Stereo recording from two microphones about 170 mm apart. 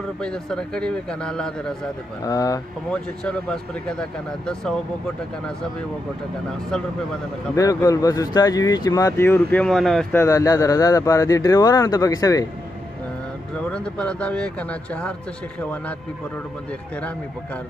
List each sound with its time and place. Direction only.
0.2 s speech: 5° left (ahead or behind)
2.2 s speech: 20° left (ahead or behind)
2.9 s speech: 5° left (ahead or behind)
7.5 s speech: 20° left (ahead or behind); by 10.0 s centre (ahead or behind)
10.1 s speech: 20° left (ahead or behind)
13.6 s speech: 5° left (ahead or behind)